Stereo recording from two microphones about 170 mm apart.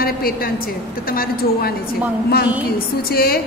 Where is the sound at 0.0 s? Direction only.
60° left (ahead or behind).